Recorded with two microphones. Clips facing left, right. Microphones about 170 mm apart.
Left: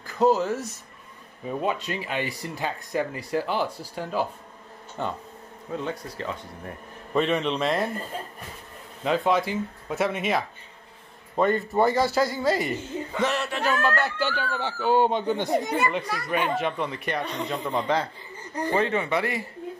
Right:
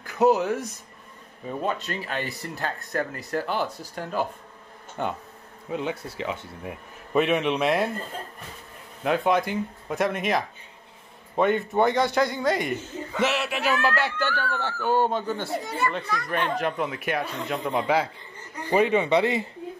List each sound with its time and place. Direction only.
0.0 s a sound: centre (ahead or behind)
0.4 s speech: centre (ahead or behind)
5.7 s speech: 15° right (ahead or behind)
9.0 s speech: centre (ahead or behind)
14.2 s speech: 15° left (ahead or behind); by 18.1 s 5° right (ahead or behind)
18.7 s speech: 15° right (ahead or behind)